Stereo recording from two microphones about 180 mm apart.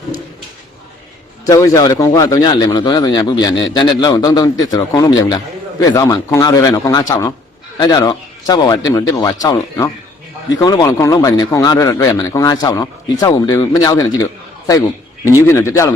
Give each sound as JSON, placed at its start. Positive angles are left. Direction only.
{"t": 1.5, "sound": "a man's voice", "side_deg": 15}